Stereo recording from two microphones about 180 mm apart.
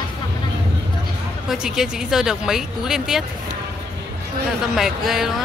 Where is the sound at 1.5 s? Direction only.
5° right (ahead or behind).